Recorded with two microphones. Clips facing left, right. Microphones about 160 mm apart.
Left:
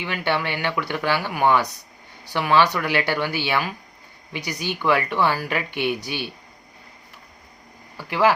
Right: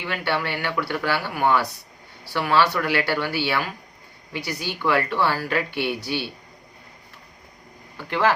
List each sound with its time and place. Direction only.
0.0 s speech: 20° left (ahead or behind)